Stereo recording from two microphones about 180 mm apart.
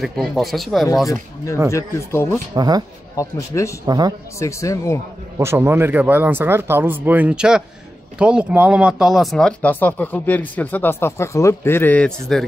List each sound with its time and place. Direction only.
0.0 s speech: centre (ahead or behind)
1.1 s speech: 15° left (ahead or behind)
2.5 s speech: 20° right (ahead or behind)
3.2 s speech: 15° left (ahead or behind)
3.8 s speech: 20° right (ahead or behind)
4.4 s speech: 15° left (ahead or behind)
5.4 s speech: 15° right (ahead or behind); by 12.4 s 5° left (ahead or behind)